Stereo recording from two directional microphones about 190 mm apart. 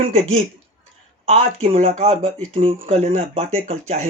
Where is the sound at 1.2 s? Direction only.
35° right (ahead or behind).